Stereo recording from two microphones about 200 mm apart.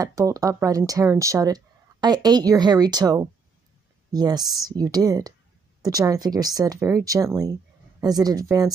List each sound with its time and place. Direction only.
0.0 s speech: 15° right (ahead or behind)